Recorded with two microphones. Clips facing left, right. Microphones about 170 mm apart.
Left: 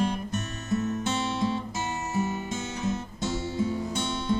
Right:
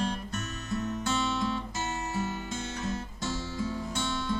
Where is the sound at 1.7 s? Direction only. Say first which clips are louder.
Left 3 dB; 20° left (ahead or behind).